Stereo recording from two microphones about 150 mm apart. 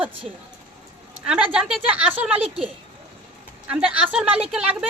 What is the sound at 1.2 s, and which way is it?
Speech, 5° right (ahead or behind).